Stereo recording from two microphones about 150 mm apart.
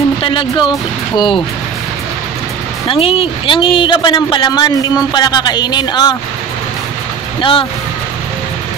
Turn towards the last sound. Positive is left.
turn(degrees=35)  # may be behind; listen again after turning